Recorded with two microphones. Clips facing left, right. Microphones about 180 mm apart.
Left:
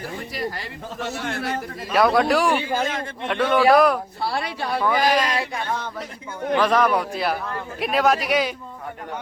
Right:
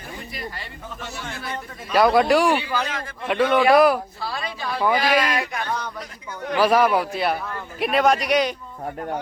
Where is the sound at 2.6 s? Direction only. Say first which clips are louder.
Left 2 dB; 45° left (ahead or behind).